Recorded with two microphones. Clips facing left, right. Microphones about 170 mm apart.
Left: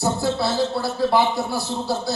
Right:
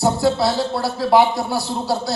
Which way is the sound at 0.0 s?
75° right (ahead or behind).